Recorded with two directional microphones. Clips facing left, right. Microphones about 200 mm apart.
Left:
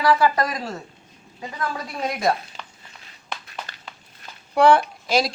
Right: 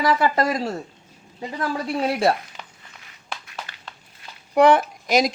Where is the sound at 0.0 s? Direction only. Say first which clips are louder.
Even; 25° right (ahead or behind).